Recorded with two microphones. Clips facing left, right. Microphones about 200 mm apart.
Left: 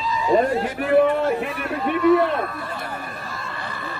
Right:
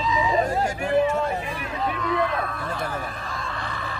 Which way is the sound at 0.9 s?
60° left (ahead or behind).